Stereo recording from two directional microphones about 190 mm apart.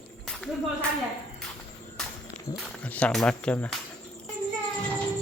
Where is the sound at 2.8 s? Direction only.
5° left (ahead or behind).